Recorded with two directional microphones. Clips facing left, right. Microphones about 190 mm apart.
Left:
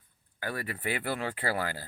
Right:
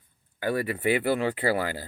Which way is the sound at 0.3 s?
20° right (ahead or behind).